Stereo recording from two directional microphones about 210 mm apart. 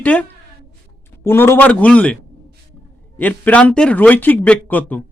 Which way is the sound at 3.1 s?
5° left (ahead or behind).